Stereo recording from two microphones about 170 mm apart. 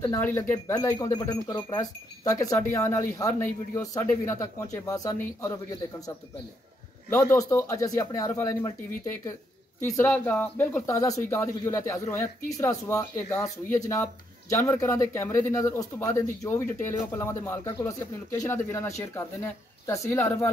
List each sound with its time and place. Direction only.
0.0 s speech: 15° left (ahead or behind)